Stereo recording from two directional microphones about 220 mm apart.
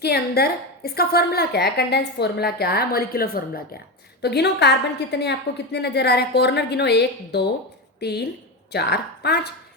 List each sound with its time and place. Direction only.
0.0 s a woman's voice: 45° left (ahead or behind)